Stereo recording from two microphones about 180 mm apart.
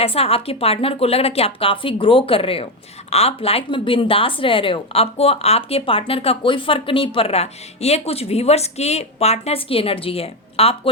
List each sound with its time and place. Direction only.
0.0 s speech: 35° left (ahead or behind)